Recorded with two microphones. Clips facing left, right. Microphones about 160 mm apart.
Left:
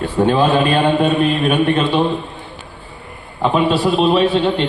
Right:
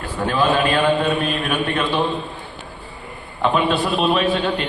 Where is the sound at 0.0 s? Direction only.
30° left (ahead or behind).